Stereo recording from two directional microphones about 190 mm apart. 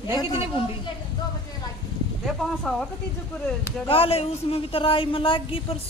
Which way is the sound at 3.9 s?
30° left (ahead or behind).